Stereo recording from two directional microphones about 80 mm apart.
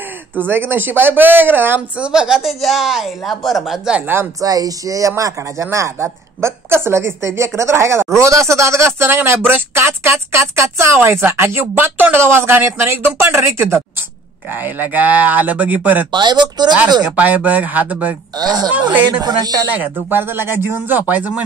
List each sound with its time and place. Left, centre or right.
0.4 s speech: right
2.0 s speech: centre
4.4 s speech: right; by 16.1 s centre
16.1 s speech: right
17.0 s speech: centre
18.4 s speech: right
18.7 s speech: centre
19.2 s speech: right
19.7 s speech: right